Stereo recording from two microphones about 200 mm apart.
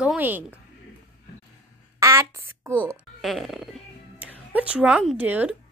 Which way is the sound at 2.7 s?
5° left (ahead or behind).